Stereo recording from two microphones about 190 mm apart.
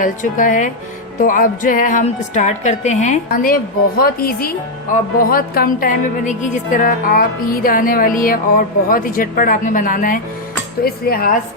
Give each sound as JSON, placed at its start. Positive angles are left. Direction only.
{"t": 0.0, "sound": "a woman's voice", "side_deg": 45}